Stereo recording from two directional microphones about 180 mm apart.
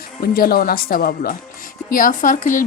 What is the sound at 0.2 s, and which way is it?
Speech, 55° left (ahead or behind).